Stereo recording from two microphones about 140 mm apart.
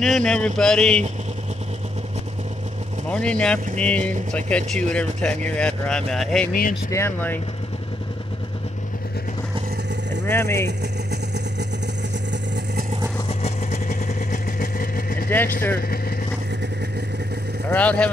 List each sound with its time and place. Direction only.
0.0 s speech: 5° left (ahead or behind)
3.1 s speech: 5° left (ahead or behind)
6.9 s speech: 15° left (ahead or behind)
10.2 s speech: 15° left (ahead or behind)
13.3 s vehicle: 50° left (ahead or behind)
13.8 s vehicle: 70° left (ahead or behind); by 15.2 s 90° left
15.2 s speech: 15° left (ahead or behind)
17.6 s speech: 10° left (ahead or behind)